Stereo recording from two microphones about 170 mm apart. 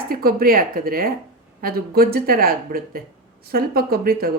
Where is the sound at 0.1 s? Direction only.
60° right (ahead or behind).